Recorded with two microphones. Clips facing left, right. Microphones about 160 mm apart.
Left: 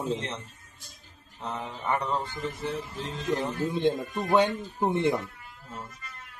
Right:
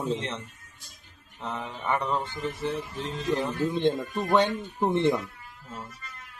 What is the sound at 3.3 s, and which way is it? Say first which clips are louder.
Speech: right 1 dB; 5° left (ahead or behind).